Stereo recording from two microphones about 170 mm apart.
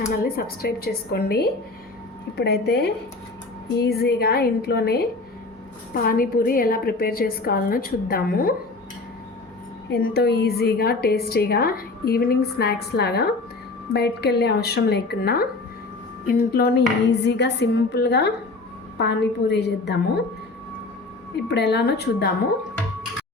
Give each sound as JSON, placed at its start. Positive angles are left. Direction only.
{"t": 0.2, "sound": "a woman's voice", "side_deg": 60}
{"t": 9.9, "sound": "a woman's voice", "side_deg": 70}
{"t": 17.1, "sound": "a woman's voice", "side_deg": 90}
{"t": 18.9, "sound": "a woman's voice", "side_deg": 90}
{"t": 21.4, "sound": "a woman's voice", "side_deg": 90}